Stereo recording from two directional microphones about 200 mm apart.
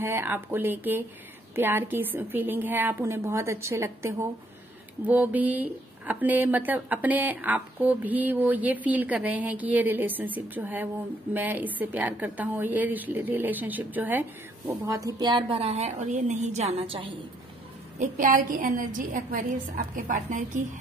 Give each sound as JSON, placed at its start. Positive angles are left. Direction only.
{"t": 0.0, "sound": "a woman's voice", "side_deg": -10}
{"t": 17.9, "sound": "a woman's voice", "side_deg": -40}